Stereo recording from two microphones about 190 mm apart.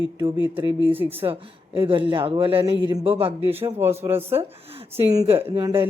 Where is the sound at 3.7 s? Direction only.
10° right (ahead or behind).